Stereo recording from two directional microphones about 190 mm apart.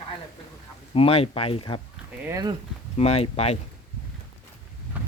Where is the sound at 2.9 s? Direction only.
35° left (ahead or behind).